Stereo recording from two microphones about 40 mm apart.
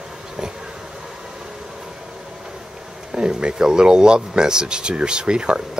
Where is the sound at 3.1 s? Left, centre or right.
Right.